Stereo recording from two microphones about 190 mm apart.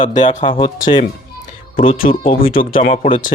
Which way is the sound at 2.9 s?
35° left (ahead or behind).